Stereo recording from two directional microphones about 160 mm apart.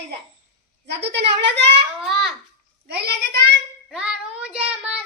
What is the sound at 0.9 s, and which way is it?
Speech, 90° right.